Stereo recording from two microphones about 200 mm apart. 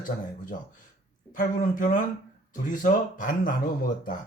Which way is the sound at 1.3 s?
40° left (ahead or behind).